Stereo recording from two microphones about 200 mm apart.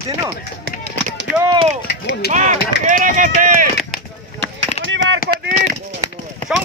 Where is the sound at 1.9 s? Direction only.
55° left (ahead or behind).